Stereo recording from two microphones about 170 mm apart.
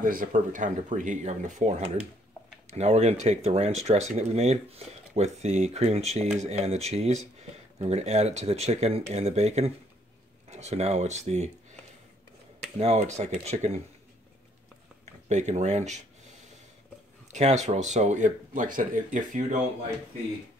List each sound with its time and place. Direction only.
0.0 s speech: 55° right (ahead or behind)
12.7 s speech: 40° right (ahead or behind)
15.2 s speech: 45° right (ahead or behind)
17.3 s speech: 40° right (ahead or behind)